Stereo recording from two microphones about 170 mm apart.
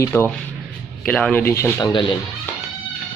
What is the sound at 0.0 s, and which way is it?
Speech, 15° left (ahead or behind).